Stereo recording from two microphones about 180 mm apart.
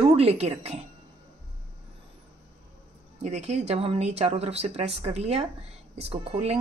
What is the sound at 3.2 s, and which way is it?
A woman's voice, 40° right (ahead or behind).